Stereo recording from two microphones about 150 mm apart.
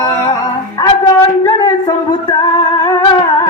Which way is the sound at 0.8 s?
25° left (ahead or behind).